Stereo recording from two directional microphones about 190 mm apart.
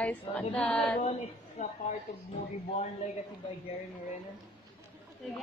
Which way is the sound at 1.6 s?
40° left (ahead or behind).